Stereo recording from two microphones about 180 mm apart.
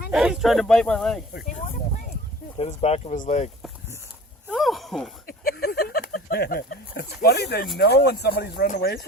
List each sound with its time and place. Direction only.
0.1 s speech: 5° right (ahead or behind)
1.3 s speech: 60° left (ahead or behind)
1.5 s a sound: 40° left (ahead or behind)
2.6 s speech: 35° left (ahead or behind)
4.4 s a sound: centre (ahead or behind)
5.2 s speech: 55° left (ahead or behind)
8.6 s speech: 50° left (ahead or behind)